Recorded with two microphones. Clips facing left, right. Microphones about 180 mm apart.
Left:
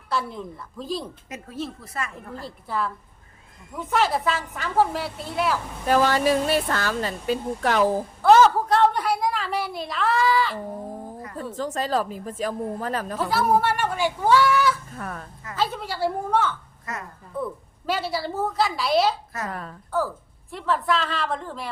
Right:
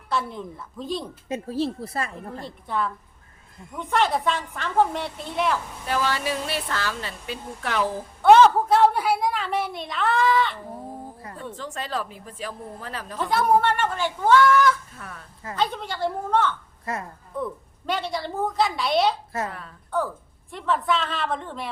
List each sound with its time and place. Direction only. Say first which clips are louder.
0.1 s a woman's voice: even; centre (ahead or behind)
1.3 s speech: right 9 dB; 30° right (ahead or behind)
2.4 s a woman's voice: even; centre (ahead or behind)
5.8 s a woman's voice: left 8 dB; 45° left (ahead or behind)
8.2 s a woman's voice: right 2 dB; centre (ahead or behind)
11.5 s a woman's voice: left 7 dB; 40° left (ahead or behind)
13.1 s speech: right 2 dB; 5° left (ahead or behind)
14.9 s a woman's voice: left 7 dB; 50° left (ahead or behind)
15.5 s speech: even; 5° left (ahead or behind)
16.9 s speech: right 4 dB; 30° right (ahead or behind)
17.4 s a woman's voice: left 1 dB; 5° left (ahead or behind)
19.5 s a woman's voice: left 4 dB; 45° left (ahead or behind)
19.9 s a woman's voice: left 1 dB; centre (ahead or behind)